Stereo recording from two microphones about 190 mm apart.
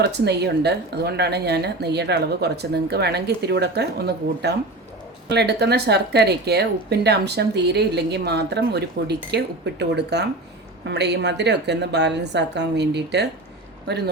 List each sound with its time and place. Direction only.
0.0 s speech: 60° right (ahead or behind)